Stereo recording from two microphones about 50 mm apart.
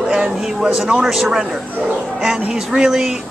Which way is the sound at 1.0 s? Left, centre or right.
Centre.